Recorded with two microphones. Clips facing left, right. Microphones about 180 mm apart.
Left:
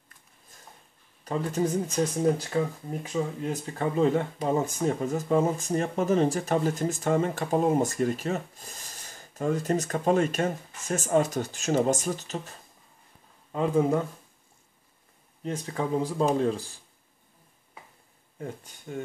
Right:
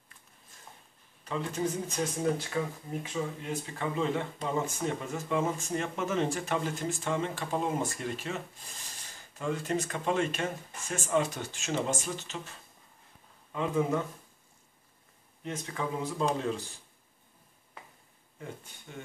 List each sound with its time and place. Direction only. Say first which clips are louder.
1.2 s speech: left 5 dB; 40° left (ahead or behind)
15.4 s speech: left 5 dB; 35° left (ahead or behind)
18.4 s speech: left 6 dB; 45° left (ahead or behind)